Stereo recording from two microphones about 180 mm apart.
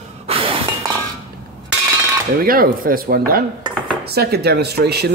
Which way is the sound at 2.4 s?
55° right (ahead or behind).